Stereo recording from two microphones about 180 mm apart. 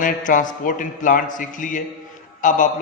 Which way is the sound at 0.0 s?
45° left (ahead or behind).